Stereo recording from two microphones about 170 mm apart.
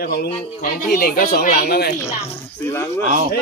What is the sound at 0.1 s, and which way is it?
Speech, 65° left (ahead or behind).